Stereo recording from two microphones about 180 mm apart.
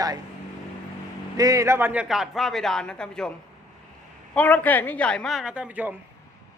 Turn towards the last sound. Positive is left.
turn(degrees=-10)  # may be behind; listen again after turning